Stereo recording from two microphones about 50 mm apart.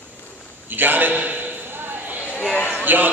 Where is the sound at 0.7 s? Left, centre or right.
Right.